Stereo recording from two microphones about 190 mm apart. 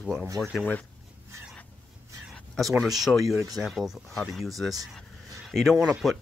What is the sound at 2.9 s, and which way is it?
Speech, centre (ahead or behind).